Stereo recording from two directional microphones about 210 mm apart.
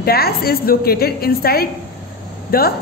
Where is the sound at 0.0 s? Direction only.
45° left (ahead or behind).